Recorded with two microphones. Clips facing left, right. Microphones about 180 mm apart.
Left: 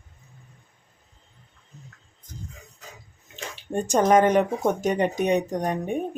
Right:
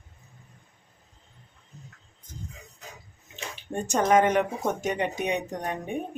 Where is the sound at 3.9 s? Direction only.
35° left (ahead or behind).